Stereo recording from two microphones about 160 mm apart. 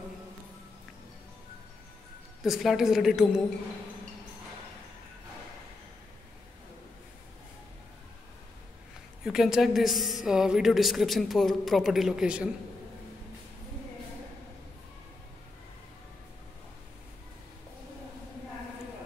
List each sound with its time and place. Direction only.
2.4 s a woman's voice: centre (ahead or behind)
9.2 s a woman's voice: 5° right (ahead or behind)